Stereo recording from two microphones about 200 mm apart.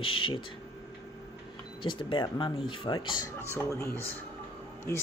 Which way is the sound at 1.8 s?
25° left (ahead or behind).